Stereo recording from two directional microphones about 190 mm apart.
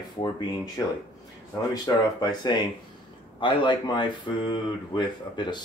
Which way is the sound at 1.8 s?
20° left (ahead or behind).